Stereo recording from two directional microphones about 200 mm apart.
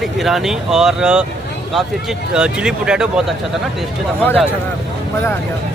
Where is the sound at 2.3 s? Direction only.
5° right (ahead or behind).